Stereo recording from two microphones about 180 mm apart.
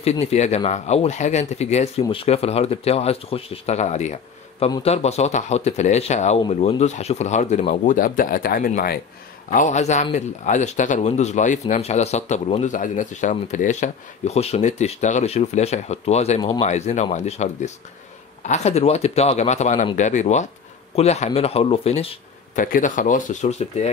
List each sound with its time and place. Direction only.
0.0 s speech: 35° left (ahead or behind); by 8.9 s 55° left (ahead or behind)
9.5 s speech: 45° left (ahead or behind)
22.6 s speech: 45° left (ahead or behind)